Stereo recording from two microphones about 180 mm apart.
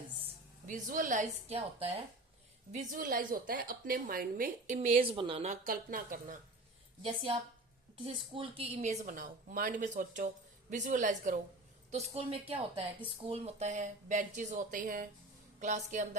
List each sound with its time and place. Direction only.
0.7 s a woman's voice: 50° right (ahead or behind)
2.7 s a woman's voice: 50° right (ahead or behind)
5.0 s speech: 30° right (ahead or behind)
5.5 s a woman's voice: 50° right (ahead or behind)
7.0 s a woman's voice: 30° right (ahead or behind)